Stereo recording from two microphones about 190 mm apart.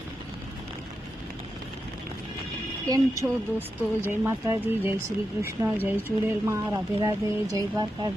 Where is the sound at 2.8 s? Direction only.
20° right (ahead or behind).